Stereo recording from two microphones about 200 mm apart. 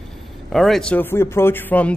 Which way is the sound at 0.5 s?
Centre (ahead or behind).